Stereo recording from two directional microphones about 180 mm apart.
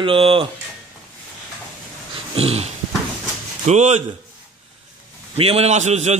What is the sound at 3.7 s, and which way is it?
Speech, 40° right (ahead or behind).